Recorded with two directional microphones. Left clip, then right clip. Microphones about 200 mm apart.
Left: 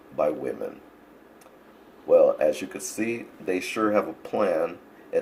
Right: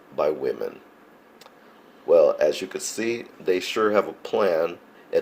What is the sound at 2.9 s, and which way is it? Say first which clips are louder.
Speech: right 1 dB; 55° right (ahead or behind).